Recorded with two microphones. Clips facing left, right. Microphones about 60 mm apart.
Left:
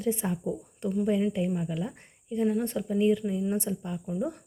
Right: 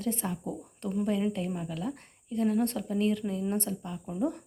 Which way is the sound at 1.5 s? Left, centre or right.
Centre.